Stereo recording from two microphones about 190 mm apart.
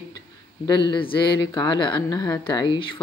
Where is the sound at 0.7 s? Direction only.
25° left (ahead or behind).